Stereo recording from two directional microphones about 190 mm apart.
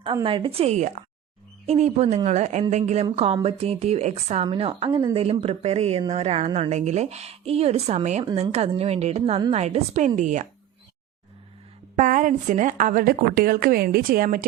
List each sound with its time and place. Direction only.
0.0 s a woman's voice: 25° right (ahead or behind)
8.2 s a woman's voice: 25° right (ahead or behind); by 10.4 s 40° right (ahead or behind)
11.9 s a woman's voice: 40° right (ahead or behind)